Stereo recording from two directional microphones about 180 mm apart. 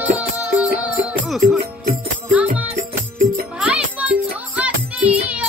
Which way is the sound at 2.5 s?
45° right (ahead or behind).